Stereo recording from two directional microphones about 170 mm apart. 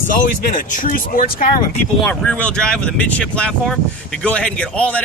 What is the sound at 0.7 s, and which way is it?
Speech, 50° left (ahead or behind).